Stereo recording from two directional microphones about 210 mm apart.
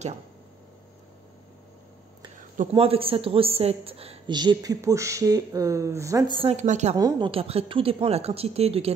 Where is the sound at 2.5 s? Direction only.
25° right (ahead or behind).